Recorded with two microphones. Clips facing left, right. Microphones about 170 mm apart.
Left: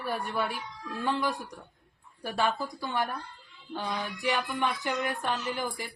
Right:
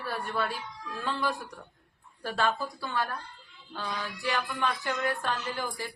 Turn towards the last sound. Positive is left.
turn(degrees=15)  # may be behind; listen again after turning